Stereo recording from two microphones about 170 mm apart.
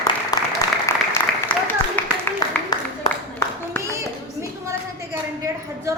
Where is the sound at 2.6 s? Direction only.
10° left (ahead or behind).